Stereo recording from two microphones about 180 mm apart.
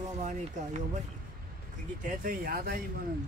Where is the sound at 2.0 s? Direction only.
50° right (ahead or behind).